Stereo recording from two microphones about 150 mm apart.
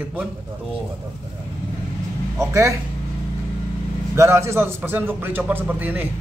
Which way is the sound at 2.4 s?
20° right (ahead or behind).